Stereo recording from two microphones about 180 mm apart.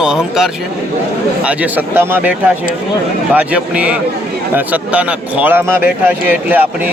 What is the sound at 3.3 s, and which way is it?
A man's voice, 5° right (ahead or behind).